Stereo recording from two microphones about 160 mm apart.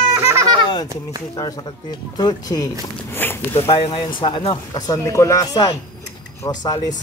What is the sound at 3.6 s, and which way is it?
Speech, 35° left (ahead or behind).